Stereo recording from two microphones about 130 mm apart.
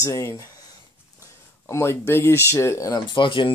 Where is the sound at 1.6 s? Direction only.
20° left (ahead or behind).